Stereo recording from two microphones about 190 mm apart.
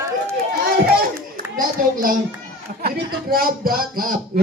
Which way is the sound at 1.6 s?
50° right (ahead or behind).